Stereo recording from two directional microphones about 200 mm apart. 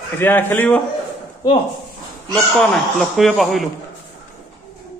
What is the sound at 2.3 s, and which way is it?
A man's voice, centre (ahead or behind).